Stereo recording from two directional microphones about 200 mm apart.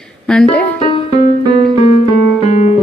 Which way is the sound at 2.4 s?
35° left (ahead or behind).